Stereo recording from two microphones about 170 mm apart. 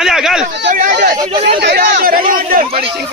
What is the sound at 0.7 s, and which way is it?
Chatter, 50° right (ahead or behind).